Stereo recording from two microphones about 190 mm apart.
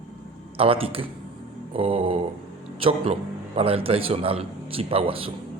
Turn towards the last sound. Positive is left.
turn(degrees=-30)  # may be behind; listen again after turning